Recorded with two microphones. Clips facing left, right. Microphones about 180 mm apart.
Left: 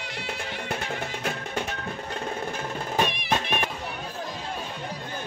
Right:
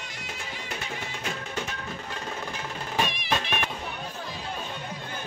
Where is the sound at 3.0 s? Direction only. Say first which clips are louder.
Left 4 dB; 55° left (ahead or behind).